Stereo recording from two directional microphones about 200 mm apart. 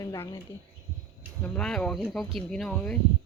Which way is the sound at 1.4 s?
5° left (ahead or behind).